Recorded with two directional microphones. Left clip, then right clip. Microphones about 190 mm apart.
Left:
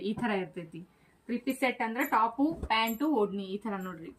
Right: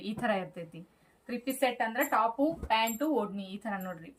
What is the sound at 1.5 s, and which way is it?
Speech, 15° right (ahead or behind).